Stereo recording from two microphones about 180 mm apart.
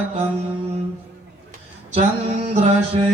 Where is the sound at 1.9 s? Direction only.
35° right (ahead or behind).